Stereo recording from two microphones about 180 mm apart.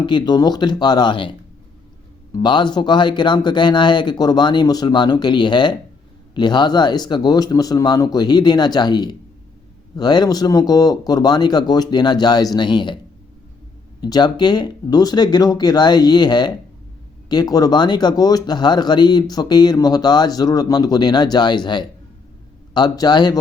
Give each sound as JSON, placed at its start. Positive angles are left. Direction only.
{"t": 0.0, "sound": "speech", "side_deg": 25}
{"t": 2.3, "sound": "speech", "side_deg": 25}
{"t": 14.0, "sound": "speech", "side_deg": 25}